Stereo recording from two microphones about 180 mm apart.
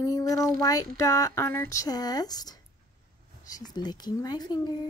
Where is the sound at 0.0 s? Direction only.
20° left (ahead or behind).